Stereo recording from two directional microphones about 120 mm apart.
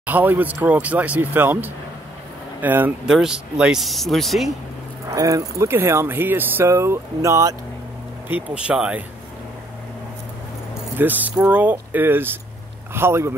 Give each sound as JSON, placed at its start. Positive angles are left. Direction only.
{"t": 0.0, "sound": "speech", "side_deg": -15}
{"t": 3.1, "sound": "speech", "side_deg": -5}
{"t": 5.1, "sound": "speech", "side_deg": -25}
{"t": 8.3, "sound": "speech", "side_deg": -10}
{"t": 11.0, "sound": "speech", "side_deg": -15}